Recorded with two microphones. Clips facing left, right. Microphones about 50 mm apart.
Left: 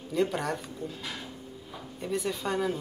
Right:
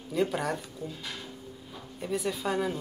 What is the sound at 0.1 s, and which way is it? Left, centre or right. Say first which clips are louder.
A woman's voice: even; centre.